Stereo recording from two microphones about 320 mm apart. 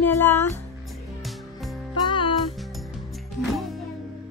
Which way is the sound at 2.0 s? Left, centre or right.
Centre.